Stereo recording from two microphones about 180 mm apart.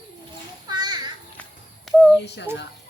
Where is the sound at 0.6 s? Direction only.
25° right (ahead or behind).